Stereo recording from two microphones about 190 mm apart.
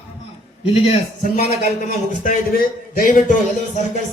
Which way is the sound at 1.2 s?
50° left (ahead or behind).